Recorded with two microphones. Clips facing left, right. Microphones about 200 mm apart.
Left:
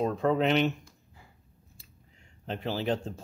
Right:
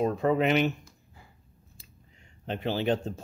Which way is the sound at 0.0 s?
5° right (ahead or behind).